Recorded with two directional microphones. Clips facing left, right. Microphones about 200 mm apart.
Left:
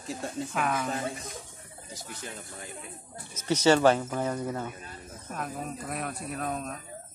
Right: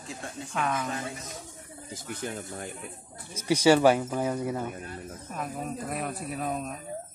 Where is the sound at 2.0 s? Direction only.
55° right (ahead or behind).